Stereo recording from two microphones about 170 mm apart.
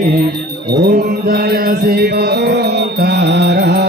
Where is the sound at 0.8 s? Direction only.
60° right (ahead or behind).